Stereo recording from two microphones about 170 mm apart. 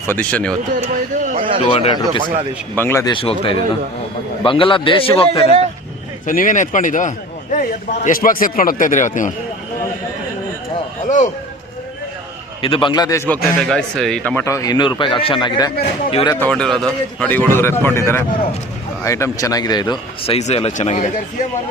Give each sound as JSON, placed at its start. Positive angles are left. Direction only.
{"t": 0.1, "sound": "a man's voice", "side_deg": 10}
{"t": 0.8, "sound": "speech", "side_deg": -50}
{"t": 1.4, "sound": "speech", "side_deg": -35}
{"t": 1.7, "sound": "a man's voice", "side_deg": 30}
{"t": 2.7, "sound": "a man's voice", "side_deg": 15}
{"t": 3.1, "sound": "a man's voice", "side_deg": 30}
{"t": 6.2, "sound": "a man's voice", "side_deg": 50}
{"t": 12.6, "sound": "a man's voice", "side_deg": 30}
{"t": 16.3, "sound": "a man's voice", "side_deg": 10}